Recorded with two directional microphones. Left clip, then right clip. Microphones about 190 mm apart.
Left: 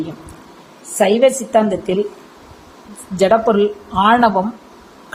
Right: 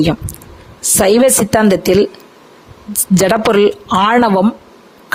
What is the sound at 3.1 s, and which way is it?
A man's voice, 55° right (ahead or behind).